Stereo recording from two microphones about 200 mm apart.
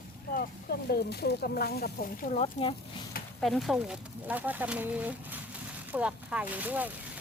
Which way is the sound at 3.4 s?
Centre (ahead or behind).